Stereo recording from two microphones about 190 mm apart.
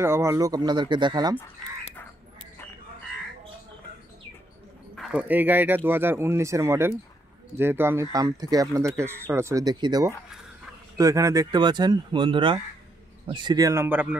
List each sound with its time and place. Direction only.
0.0 s speech: 15° right (ahead or behind)
4.9 s speech: 5° right (ahead or behind)